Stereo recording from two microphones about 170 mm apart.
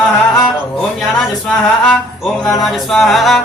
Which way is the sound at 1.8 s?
5° left (ahead or behind).